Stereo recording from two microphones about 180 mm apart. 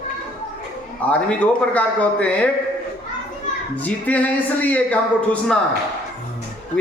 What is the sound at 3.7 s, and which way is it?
Speech, 10° left (ahead or behind).